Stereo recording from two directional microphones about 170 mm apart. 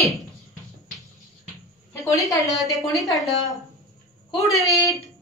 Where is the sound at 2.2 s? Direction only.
20° left (ahead or behind).